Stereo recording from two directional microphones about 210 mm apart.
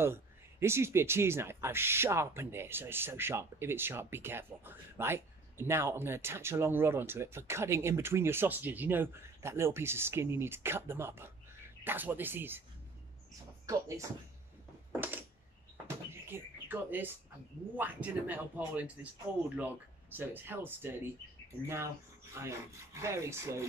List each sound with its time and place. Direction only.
0.0 s speech: 10° right (ahead or behind)
13.7 s speech: 15° right (ahead or behind)
14.9 s a sound: 10° right (ahead or behind)
15.9 s door: 10° right (ahead or behind)
17.7 s speech: 10° right (ahead or behind)
22.3 s speech: 15° right (ahead or behind)